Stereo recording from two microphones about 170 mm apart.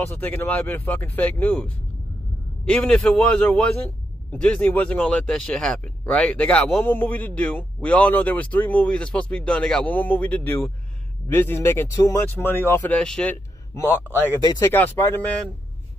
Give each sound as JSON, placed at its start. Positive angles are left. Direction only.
{"t": 0.1, "sound": "speech", "side_deg": 10}
{"t": 14.4, "sound": "speech", "side_deg": 25}
{"t": 14.7, "sound": "speech", "side_deg": 10}